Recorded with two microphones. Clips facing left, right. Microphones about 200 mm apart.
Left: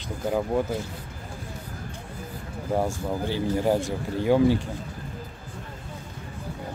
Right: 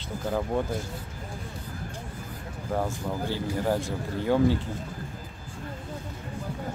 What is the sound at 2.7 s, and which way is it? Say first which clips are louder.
Speech: left 3 dB; 15° left (ahead or behind).